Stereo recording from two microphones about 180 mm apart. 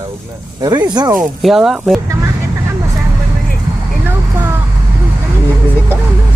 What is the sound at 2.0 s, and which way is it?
Vehicle, 15° right (ahead or behind).